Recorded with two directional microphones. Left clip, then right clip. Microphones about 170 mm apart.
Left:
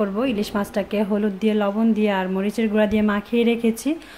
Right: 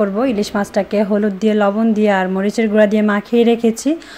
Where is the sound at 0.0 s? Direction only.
15° right (ahead or behind).